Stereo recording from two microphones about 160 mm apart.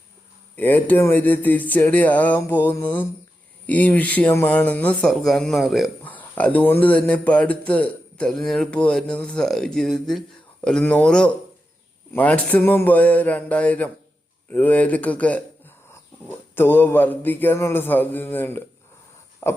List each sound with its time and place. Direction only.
0.5 s a man's voice: 10° left (ahead or behind)
6.1 s a man's voice: 10° left (ahead or behind)
19.4 s pig: 15° left (ahead or behind)